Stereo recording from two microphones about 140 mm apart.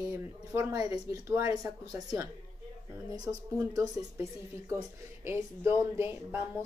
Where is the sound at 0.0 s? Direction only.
20° right (ahead or behind).